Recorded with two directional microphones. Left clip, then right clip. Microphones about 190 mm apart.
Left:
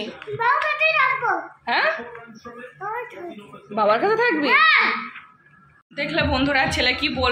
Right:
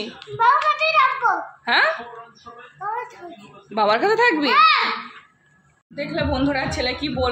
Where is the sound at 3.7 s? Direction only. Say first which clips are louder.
Right 1 dB; 45° right (ahead or behind).